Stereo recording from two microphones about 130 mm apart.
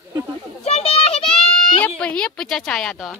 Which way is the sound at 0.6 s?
50° left (ahead or behind).